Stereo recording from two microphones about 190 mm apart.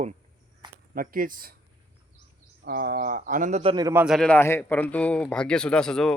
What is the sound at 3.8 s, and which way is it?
A man's voice, 10° right (ahead or behind).